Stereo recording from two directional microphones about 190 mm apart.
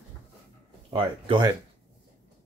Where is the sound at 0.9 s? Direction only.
25° right (ahead or behind).